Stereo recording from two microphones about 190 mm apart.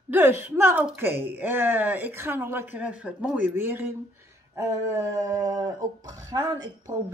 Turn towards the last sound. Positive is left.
turn(degrees=-20)  # may be behind; listen again after turning